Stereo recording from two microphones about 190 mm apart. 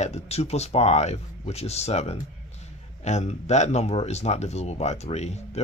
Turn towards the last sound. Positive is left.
turn(degrees=35)  # may be behind; listen again after turning